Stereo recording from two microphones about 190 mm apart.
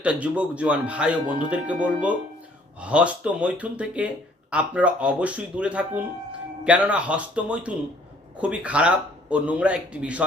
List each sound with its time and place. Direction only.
0.0 s speech: 5° right (ahead or behind)